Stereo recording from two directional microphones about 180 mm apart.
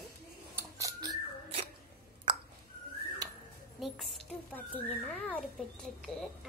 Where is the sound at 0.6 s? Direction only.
20° right (ahead or behind).